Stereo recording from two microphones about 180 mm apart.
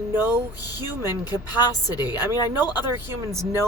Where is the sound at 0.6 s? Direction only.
20° left (ahead or behind).